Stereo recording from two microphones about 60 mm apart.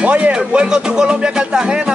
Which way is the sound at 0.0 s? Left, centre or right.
Right.